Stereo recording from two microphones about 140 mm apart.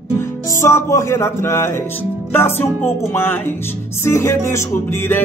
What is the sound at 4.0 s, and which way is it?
Speech, 20° left (ahead or behind).